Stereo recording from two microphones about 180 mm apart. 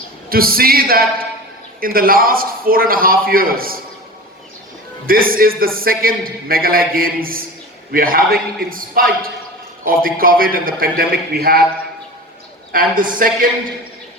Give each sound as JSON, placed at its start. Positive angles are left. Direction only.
{"t": 0.3, "sound": "a man's voice", "side_deg": -55}
{"t": 5.0, "sound": "a man's voice", "side_deg": -55}
{"t": 12.7, "sound": "a man's voice", "side_deg": -50}